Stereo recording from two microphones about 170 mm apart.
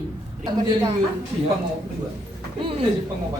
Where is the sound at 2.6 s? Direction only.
30° right (ahead or behind).